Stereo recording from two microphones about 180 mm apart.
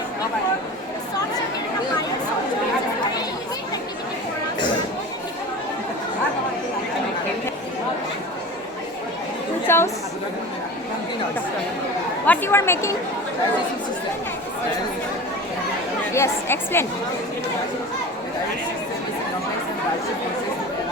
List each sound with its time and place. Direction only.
9.6 s chatter: 15° left (ahead or behind)
12.2 s speech: 10° left (ahead or behind)
16.1 s chatter: 15° left (ahead or behind)